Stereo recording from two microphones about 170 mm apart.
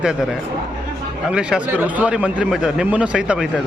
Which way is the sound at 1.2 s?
5° right (ahead or behind).